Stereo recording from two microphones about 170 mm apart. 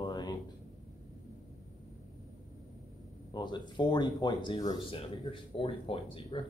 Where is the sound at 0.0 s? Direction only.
25° left (ahead or behind).